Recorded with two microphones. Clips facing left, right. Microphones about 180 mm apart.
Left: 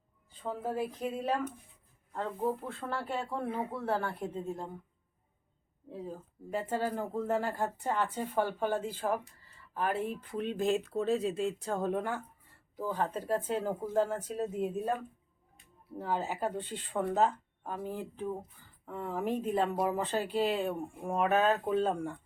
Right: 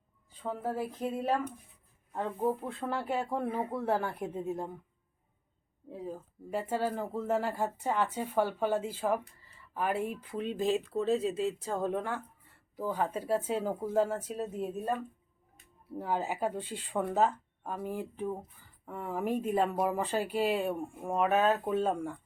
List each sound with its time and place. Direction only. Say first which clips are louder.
0.4 s speech: even; centre (ahead or behind)
3.7 s speech: right 2 dB; 20° right (ahead or behind)
6.1 s speech: right 2 dB; 10° right (ahead or behind)
12.7 s speech: right 1 dB; 10° right (ahead or behind)
16.0 s speech: right 1 dB; 10° right (ahead or behind)